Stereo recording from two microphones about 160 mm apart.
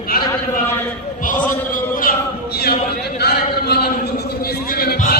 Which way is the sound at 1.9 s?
65° left (ahead or behind).